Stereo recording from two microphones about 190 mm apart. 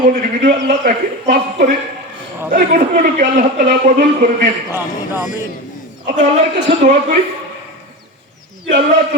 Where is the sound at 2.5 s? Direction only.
45° right (ahead or behind).